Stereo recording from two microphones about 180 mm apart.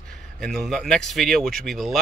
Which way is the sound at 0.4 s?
Centre (ahead or behind).